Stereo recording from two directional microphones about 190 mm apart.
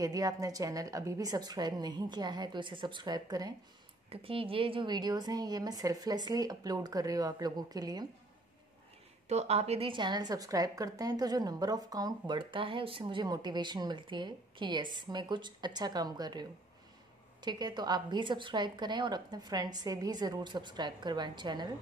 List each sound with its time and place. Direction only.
0.0 s a woman's voice: 20° right (ahead or behind)
9.3 s a woman's voice: 35° right (ahead or behind)